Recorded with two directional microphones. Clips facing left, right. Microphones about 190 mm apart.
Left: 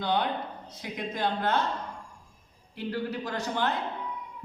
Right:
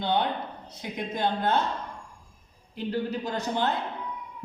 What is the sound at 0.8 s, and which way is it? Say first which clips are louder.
Speech: right 2 dB; 25° right (ahead or behind).